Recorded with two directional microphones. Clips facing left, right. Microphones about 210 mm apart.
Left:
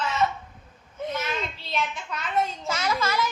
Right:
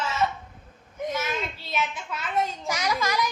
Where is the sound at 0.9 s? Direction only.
10° right (ahead or behind).